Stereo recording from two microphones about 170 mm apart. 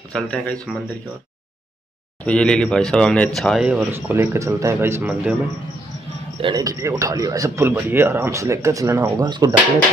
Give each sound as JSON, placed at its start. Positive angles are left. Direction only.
{"t": 0.1, "sound": "speech", "side_deg": 5}
{"t": 2.2, "sound": "speech", "side_deg": 5}
{"t": 3.9, "sound": "a man's voice", "side_deg": -15}
{"t": 6.4, "sound": "a man's voice", "side_deg": -20}